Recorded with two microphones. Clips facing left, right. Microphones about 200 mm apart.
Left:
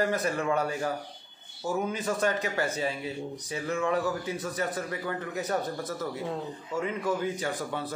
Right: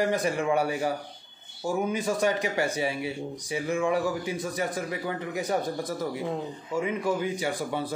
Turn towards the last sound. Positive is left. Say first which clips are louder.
# right 3 dB
turn(degrees=-10)  # may be behind; listen again after turning